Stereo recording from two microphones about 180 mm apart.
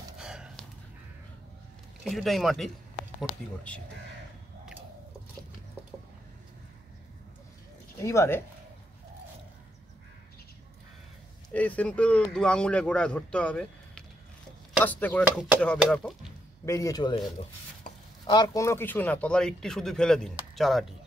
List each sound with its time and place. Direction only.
0.2 s snort: 5° right (ahead or behind)
2.0 s a man's voice: centre (ahead or behind)
8.0 s speech: 15° left (ahead or behind)
11.5 s a man's voice: 10° left (ahead or behind)
16.6 s a man's voice: 20° left (ahead or behind)
18.2 s speech: 25° left (ahead or behind); by 20.8 s centre (ahead or behind)